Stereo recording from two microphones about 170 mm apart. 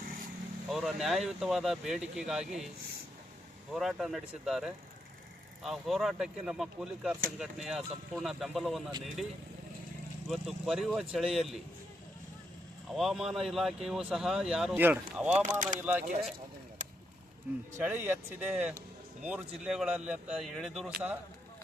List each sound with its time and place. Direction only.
0.7 s speech: centre (ahead or behind)
3.7 s speech: centre (ahead or behind)
12.9 s speech: centre (ahead or behind)
15.5 s speech: 45° right (ahead or behind)
15.8 s speech: 10° right (ahead or behind)
17.5 s speech: 10° right (ahead or behind)